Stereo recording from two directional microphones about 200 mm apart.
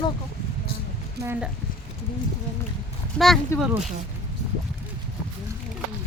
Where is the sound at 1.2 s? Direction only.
10° right (ahead or behind).